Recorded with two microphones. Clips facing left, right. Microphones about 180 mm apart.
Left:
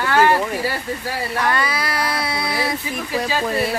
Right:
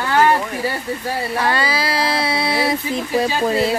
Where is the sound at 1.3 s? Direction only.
30° right (ahead or behind).